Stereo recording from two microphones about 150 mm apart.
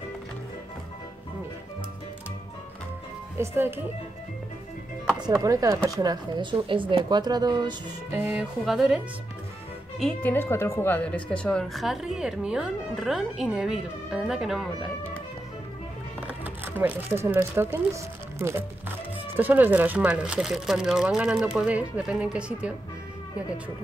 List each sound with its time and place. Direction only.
3.3 s speech: 15° right (ahead or behind)
5.3 s speech: 25° right (ahead or behind)
8.1 s speech: 10° right (ahead or behind)
16.3 s speech: 15° right (ahead or behind)